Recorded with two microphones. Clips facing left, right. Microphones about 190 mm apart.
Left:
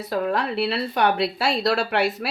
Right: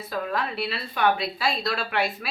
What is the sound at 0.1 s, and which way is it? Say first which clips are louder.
Speech: left 5 dB; 70° left (ahead or behind).